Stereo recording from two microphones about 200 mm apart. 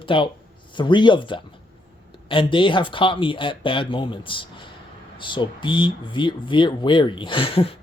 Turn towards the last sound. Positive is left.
turn(degrees=30)  # may be behind; listen again after turning